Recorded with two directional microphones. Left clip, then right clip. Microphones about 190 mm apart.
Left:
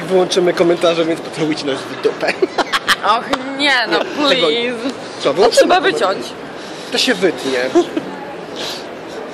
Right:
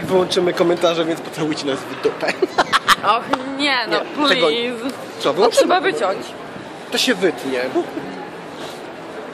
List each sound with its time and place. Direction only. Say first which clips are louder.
0.1 s speech: left 3 dB; 15° right (ahead or behind)
2.5 s a sound: right 1 dB; 25° right (ahead or behind)
3.0 s speech: left 2 dB; 5° left (ahead or behind)
5.2 s speech: left 3 dB; 15° right (ahead or behind)
5.7 s speech: left 4 dB; 15° left (ahead or behind)
6.9 s speech: left 3 dB; 15° right (ahead or behind)